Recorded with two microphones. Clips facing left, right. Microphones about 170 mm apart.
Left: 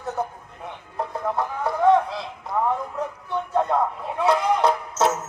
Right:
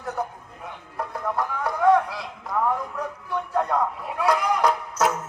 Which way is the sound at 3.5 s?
20° left (ahead or behind).